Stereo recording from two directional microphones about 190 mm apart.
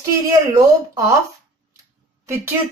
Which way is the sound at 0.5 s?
15° right (ahead or behind).